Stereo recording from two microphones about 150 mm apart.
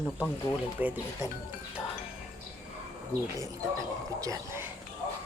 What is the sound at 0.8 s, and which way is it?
Speech, 10° right (ahead or behind).